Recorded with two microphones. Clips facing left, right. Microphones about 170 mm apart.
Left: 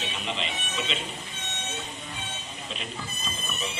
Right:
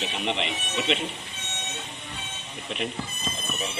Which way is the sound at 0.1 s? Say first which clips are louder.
Right 4 dB; 65° right (ahead or behind).